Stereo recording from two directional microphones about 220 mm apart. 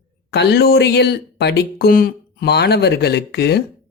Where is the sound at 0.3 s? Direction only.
50° left (ahead or behind).